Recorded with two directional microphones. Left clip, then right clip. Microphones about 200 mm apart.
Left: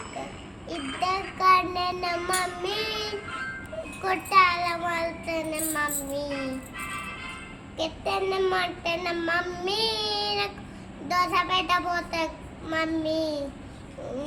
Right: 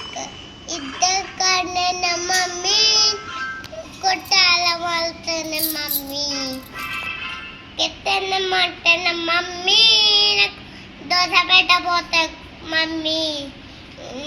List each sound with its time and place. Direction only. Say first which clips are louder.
0.7 s child singing: right 7 dB; 15° left (ahead or behind)
6.1 s child singing: right 10 dB; 35° left (ahead or behind)
7.8 s child singing: right 7 dB; 20° left (ahead or behind)